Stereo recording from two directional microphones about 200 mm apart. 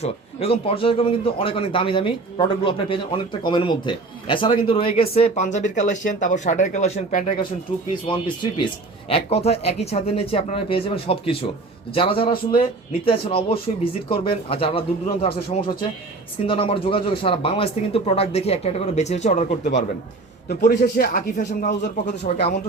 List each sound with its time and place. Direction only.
0.0 s speech: 30° left (ahead or behind)
8.0 s speech: 25° left (ahead or behind); by 21.8 s 45° left (ahead or behind)
22.0 s speech: 60° left (ahead or behind)